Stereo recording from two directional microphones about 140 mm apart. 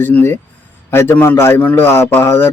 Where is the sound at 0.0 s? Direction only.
15° left (ahead or behind).